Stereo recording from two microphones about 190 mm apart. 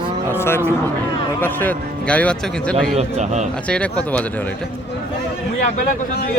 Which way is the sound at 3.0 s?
35° right (ahead or behind).